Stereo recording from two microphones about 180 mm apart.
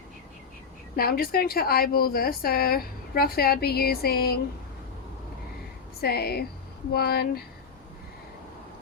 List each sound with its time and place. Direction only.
0.9 s speech: 55° left (ahead or behind)
6.0 s speech: 60° left (ahead or behind)